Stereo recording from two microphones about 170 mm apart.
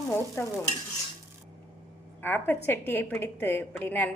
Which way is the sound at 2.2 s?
10° left (ahead or behind).